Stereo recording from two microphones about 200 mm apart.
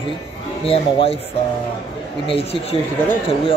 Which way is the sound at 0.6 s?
30° left (ahead or behind).